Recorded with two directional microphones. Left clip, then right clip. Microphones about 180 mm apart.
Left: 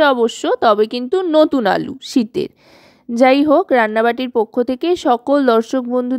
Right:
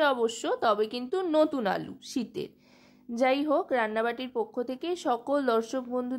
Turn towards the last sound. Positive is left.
turn(degrees=40)  # may be behind; listen again after turning